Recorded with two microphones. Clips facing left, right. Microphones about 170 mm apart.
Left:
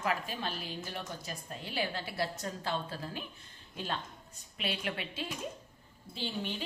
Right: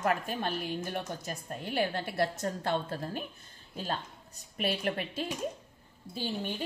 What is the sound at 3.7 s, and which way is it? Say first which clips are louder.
A woman's voice: right 2 dB; 40° right (ahead or behind).